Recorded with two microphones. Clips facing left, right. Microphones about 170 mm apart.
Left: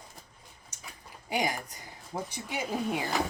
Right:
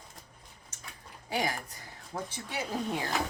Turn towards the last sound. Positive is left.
turn(degrees=5)  # may be behind; listen again after turning